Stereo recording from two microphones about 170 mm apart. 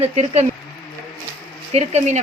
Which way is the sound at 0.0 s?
40° right (ahead or behind).